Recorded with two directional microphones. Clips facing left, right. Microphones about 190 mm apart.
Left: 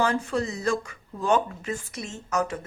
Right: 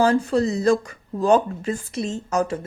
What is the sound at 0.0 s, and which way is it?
Speech, 35° right (ahead or behind).